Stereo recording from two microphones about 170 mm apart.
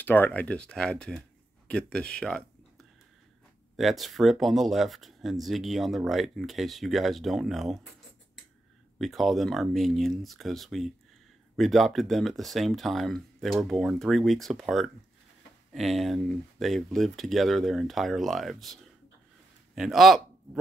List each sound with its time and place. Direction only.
0.0 s speech: 10° left (ahead or behind)
8.9 s a man's voice: centre (ahead or behind)